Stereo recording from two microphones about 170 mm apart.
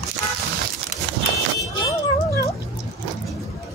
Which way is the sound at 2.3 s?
20° left (ahead or behind).